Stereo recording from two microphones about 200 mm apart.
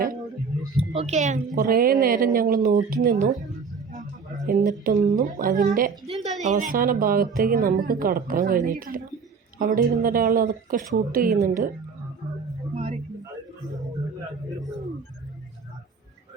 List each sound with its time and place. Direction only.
0.8 s a woman's voice: 30° right (ahead or behind)
4.4 s a woman's voice: 45° right (ahead or behind)
12.7 s a sound: 30° right (ahead or behind)